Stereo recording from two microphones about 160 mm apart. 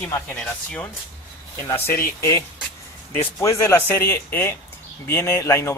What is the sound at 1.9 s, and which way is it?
A man's voice, 15° left (ahead or behind).